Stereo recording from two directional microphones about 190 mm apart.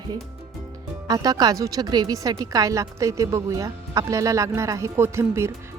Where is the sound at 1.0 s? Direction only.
20° right (ahead or behind).